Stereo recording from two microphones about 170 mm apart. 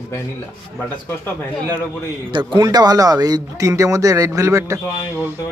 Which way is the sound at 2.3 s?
30° right (ahead or behind).